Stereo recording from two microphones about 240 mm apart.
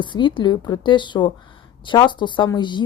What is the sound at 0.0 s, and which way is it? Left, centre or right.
A woman's voice, centre.